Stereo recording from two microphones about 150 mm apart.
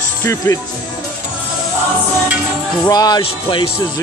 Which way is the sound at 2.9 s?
25° left (ahead or behind).